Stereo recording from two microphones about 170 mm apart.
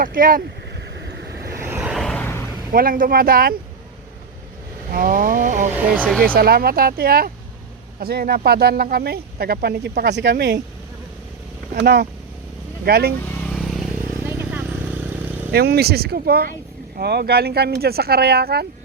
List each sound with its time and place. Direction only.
0.0 s speech: 55° right (ahead or behind)
1.5 s vehicle: 15° right (ahead or behind)
1.8 s vehicle: centre (ahead or behind)
2.7 s speech: 55° right (ahead or behind)
4.9 s vehicle: 55° right (ahead or behind)
5.7 s speech: 10° right (ahead or behind)
6.2 s speech: 60° right (ahead or behind); by 10.6 s 85° right
11.7 s speech: 75° right (ahead or behind)
13.2 s vehicle: 10° left (ahead or behind); by 14.6 s 10° right (ahead or behind)
15.5 s speech: 70° right (ahead or behind)